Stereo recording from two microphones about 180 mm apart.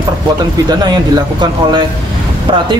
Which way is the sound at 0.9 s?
25° right (ahead or behind).